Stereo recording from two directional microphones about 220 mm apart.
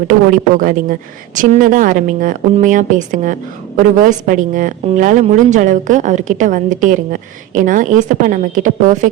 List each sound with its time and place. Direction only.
0.1 s a woman's voice: 35° right (ahead or behind)